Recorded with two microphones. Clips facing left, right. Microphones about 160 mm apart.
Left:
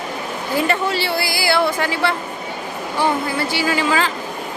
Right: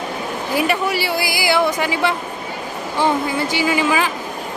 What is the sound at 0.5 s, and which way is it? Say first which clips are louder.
Speech: even; 10° right (ahead or behind).